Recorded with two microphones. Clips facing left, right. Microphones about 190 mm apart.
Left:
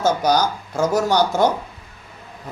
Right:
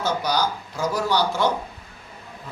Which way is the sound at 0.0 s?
45° left (ahead or behind).